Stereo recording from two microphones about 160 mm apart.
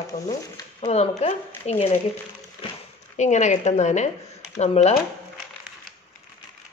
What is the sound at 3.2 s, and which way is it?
A woman's voice, 50° left (ahead or behind).